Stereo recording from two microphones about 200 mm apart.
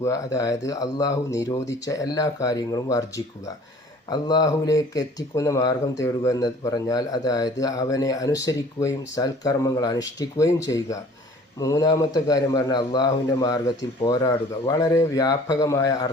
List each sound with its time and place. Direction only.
0.0 s a man's voice: 15° left (ahead or behind)